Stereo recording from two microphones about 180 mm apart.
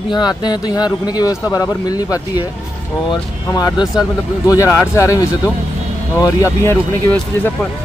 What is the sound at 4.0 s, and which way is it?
Speech, 20° left (ahead or behind).